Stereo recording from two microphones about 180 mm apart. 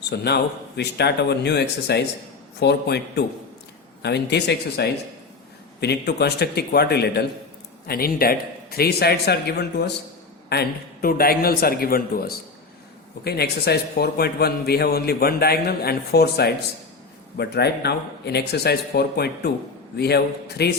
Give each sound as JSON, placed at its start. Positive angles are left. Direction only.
{"t": 0.1, "sound": "a man's voice", "side_deg": 70}
{"t": 13.2, "sound": "a man's voice", "side_deg": 65}